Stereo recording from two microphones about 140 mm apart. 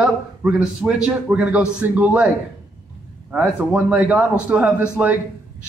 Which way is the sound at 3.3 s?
5° right (ahead or behind).